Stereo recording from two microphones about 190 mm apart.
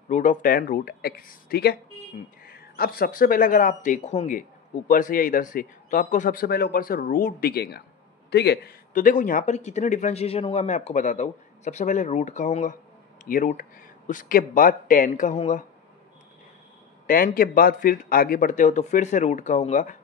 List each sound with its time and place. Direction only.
0.1 s speech: 40° left (ahead or behind)
17.0 s speech: 50° left (ahead or behind)